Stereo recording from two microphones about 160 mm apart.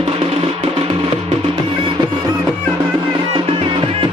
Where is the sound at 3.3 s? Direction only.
35° right (ahead or behind).